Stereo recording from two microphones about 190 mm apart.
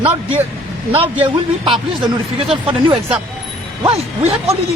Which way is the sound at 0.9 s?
30° right (ahead or behind).